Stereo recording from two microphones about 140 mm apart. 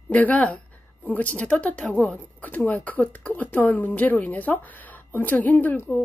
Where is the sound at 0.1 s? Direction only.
10° left (ahead or behind).